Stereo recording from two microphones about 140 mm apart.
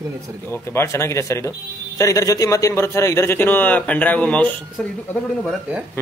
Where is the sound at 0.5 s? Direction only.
20° left (ahead or behind).